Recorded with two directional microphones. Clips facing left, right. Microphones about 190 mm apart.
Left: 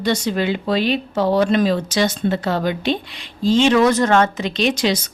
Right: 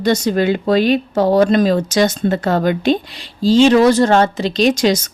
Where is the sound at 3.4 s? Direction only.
35° right (ahead or behind).